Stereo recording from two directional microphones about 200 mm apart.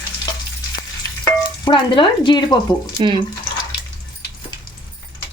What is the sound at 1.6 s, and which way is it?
Speech, 25° left (ahead or behind).